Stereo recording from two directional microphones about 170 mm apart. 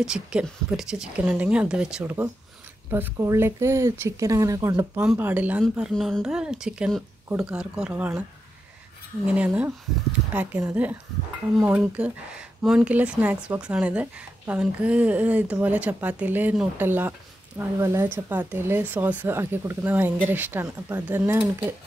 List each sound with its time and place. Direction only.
0.0 s a woman's voice: 5° right (ahead or behind)
2.9 s a woman's voice: 15° right (ahead or behind)
9.2 s speech: 5° right (ahead or behind)